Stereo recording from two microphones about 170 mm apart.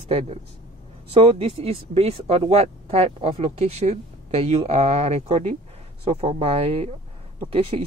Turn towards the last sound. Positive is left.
turn(degrees=-30)  # may be behind; listen again after turning